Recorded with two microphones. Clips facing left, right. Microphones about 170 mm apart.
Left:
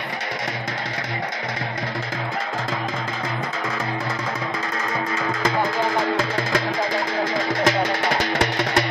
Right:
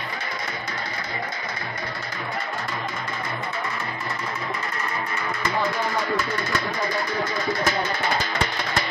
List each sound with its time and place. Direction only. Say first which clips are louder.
6.1 s music: left 3 dB; 90° left; by 8.8 s 70° left (ahead or behind)